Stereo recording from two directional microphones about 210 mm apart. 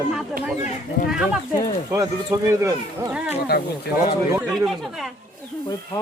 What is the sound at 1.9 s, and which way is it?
Speech, 15° right (ahead or behind).